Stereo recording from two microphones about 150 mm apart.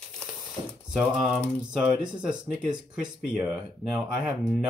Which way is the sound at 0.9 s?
5° right (ahead or behind).